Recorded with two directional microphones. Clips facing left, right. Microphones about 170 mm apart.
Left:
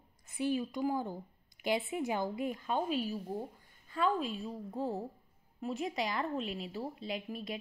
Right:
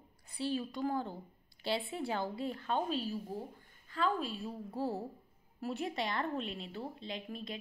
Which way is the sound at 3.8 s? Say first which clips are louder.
Left 2 dB; 20° left (ahead or behind).